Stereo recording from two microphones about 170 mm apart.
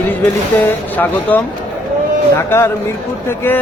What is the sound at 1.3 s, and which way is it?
Speech, 10° left (ahead or behind).